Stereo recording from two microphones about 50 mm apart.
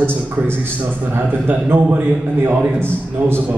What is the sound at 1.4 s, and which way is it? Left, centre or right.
A man's voice, right.